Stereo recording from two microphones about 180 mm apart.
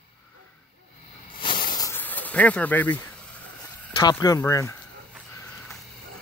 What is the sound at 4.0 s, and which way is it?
Speech, 20° left (ahead or behind).